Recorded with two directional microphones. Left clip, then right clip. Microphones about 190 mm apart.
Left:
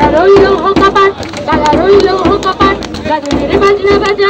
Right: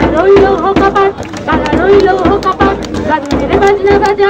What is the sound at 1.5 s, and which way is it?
Run, 45° right (ahead or behind).